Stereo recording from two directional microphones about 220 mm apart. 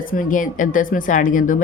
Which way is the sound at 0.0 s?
40° left (ahead or behind).